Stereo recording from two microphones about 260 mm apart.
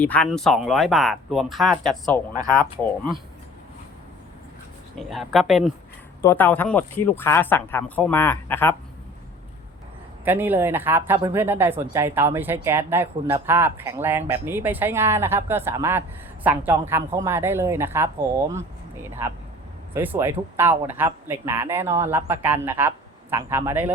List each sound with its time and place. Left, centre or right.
0.0 s speech: centre
4.9 s speech: centre
10.2 s speech: centre